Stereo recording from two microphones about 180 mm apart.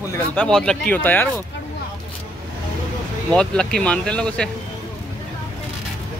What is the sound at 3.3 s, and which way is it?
Speech, 5° left (ahead or behind).